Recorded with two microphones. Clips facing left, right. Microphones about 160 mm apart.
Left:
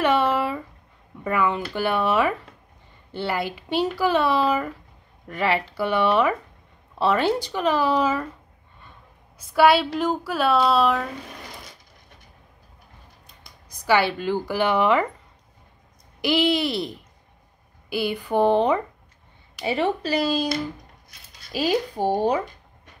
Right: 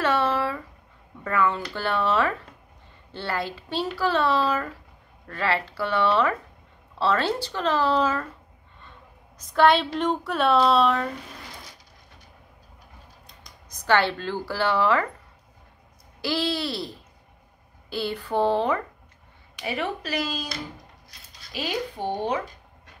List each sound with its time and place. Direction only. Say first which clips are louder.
0.0 s a sound: left 3 dB; 15° left (ahead or behind)
1.2 s speech: left 1 dB; 15° left (ahead or behind)
9.5 s a woman's voice: left 2 dB; 5° left (ahead or behind)
13.8 s speech: left 2 dB; 10° left (ahead or behind)
16.2 s speech: left 5 dB; 15° left (ahead or behind)
19.6 s speech: left 6 dB; 30° left (ahead or behind)